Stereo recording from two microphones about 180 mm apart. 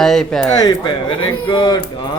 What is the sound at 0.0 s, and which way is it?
Speech, 5° left (ahead or behind).